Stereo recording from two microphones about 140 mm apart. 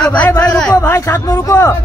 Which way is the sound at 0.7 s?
20° left (ahead or behind).